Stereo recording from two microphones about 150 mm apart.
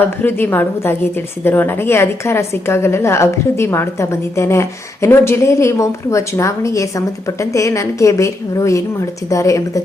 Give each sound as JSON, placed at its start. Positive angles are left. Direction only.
{"t": 0.2, "sound": "a woman's voice", "side_deg": 15}